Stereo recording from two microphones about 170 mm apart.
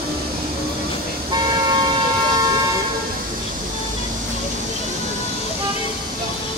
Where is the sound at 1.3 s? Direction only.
25° right (ahead or behind).